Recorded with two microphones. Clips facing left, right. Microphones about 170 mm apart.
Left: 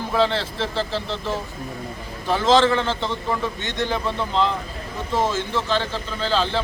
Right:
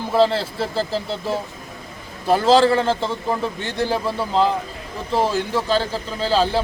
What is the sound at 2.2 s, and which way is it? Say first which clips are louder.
A man's voice: right 3 dB; 35° right (ahead or behind).